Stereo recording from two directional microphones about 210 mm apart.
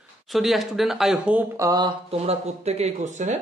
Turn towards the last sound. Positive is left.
turn(degrees=-35)  # may be behind; listen again after turning